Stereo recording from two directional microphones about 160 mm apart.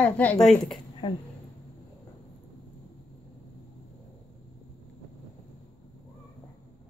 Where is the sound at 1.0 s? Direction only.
35° left (ahead or behind).